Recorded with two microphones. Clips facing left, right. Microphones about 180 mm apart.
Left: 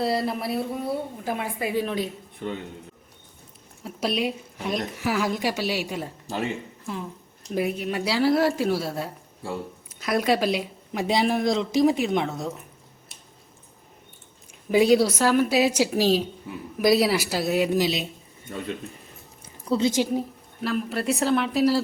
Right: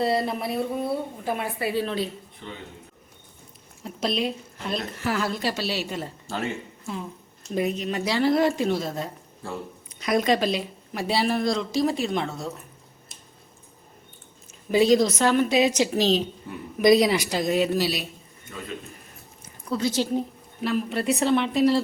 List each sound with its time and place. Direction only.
0.0 s speech: centre (ahead or behind)
1.2 s speech: 10° left (ahead or behind)
2.4 s a man's voice: 50° left (ahead or behind)
3.8 s speech: 10° left (ahead or behind)
6.8 s speech: centre (ahead or behind); by 12.5 s 15° left (ahead or behind)
14.7 s speech: 10° left (ahead or behind)
19.6 s a woman's voice: 25° left (ahead or behind)
20.0 s speech: 10° left (ahead or behind)
20.6 s speech: centre (ahead or behind)